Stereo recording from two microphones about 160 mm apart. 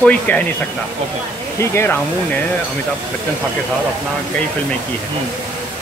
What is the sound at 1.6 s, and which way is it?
Speech, 15° left (ahead or behind).